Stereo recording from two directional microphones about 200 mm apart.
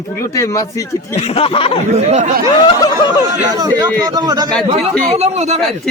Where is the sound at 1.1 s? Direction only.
30° left (ahead or behind).